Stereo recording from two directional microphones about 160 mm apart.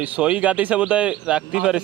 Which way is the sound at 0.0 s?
10° right (ahead or behind).